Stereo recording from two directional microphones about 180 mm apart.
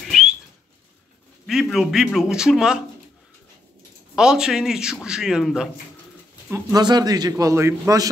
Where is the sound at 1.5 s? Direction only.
Centre (ahead or behind).